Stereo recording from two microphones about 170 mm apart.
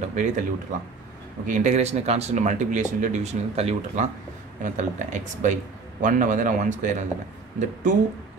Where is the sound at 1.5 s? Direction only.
45° right (ahead or behind).